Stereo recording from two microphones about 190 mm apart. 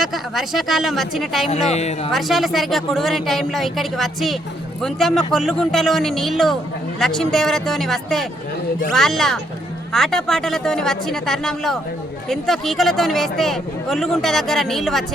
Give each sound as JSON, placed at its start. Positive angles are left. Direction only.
{"t": 0.0, "sound": "speech", "side_deg": 0}
{"t": 1.7, "sound": "speech", "side_deg": 35}
{"t": 2.1, "sound": "speech", "side_deg": 0}